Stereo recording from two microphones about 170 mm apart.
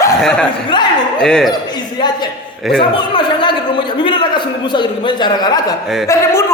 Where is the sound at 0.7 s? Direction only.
25° left (ahead or behind).